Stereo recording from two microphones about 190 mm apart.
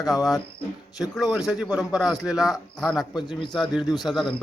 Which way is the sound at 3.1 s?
20° left (ahead or behind).